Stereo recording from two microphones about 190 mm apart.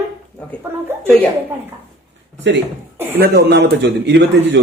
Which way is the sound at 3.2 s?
60° right (ahead or behind).